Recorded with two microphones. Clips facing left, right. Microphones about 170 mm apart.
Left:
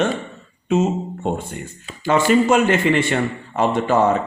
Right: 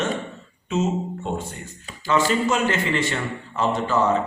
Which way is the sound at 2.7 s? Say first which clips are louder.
Left 6 dB; 55° left (ahead or behind).